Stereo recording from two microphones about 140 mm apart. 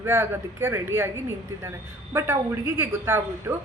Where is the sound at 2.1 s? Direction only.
20° right (ahead or behind).